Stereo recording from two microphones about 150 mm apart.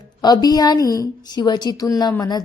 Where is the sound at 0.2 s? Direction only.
25° left (ahead or behind).